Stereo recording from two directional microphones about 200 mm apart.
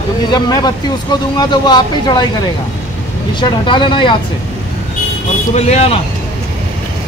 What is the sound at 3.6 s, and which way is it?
Speech, 25° left (ahead or behind).